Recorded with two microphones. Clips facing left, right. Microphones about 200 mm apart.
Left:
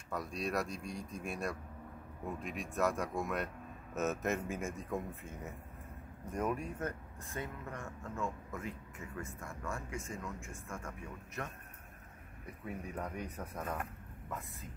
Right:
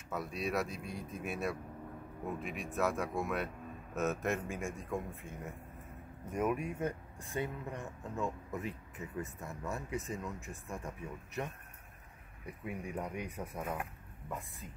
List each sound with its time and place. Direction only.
0.1 s speech: 5° right (ahead or behind)
12.6 s speech: 10° right (ahead or behind)